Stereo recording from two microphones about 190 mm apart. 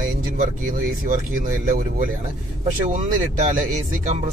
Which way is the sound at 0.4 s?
45° right (ahead or behind).